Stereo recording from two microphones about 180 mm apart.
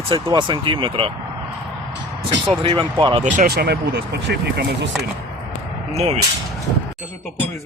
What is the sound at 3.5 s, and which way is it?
Speech, 65° right (ahead or behind).